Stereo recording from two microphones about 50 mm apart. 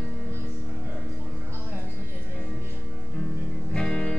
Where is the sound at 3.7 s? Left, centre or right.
Centre.